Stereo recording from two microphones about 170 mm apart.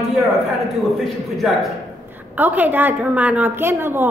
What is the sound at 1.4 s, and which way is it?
A woman's voice, 5° right (ahead or behind).